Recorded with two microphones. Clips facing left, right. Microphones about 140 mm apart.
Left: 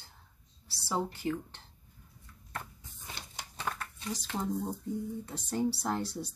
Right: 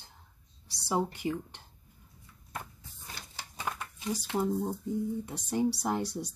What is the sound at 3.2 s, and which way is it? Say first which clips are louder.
Typewriter: left 1 dB; 25° left (ahead or behind).